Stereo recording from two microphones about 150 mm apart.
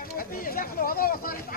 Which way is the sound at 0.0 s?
75° left (ahead or behind).